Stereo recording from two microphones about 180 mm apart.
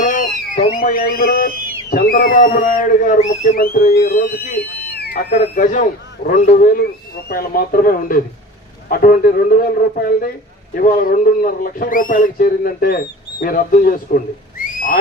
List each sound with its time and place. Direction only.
0.0 s a sound: 45° left (ahead or behind)
0.7 s speech: 55° left (ahead or behind)
5.6 s a man's voice: 45° left (ahead or behind)